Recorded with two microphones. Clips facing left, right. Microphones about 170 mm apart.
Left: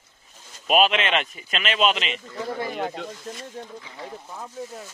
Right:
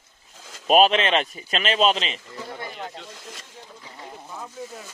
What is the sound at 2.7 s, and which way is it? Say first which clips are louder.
Speech: left 7 dB; 60° left (ahead or behind).